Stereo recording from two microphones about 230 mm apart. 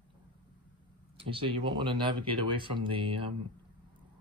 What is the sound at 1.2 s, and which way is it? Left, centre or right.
Speech, right.